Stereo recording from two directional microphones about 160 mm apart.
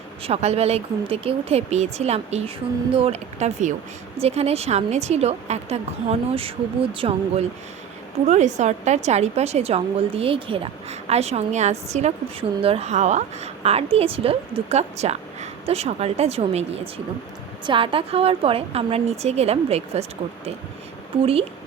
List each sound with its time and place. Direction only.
0.2 s a woman's voice: 40° right (ahead or behind)
8.3 s a woman's voice: 45° right (ahead or behind)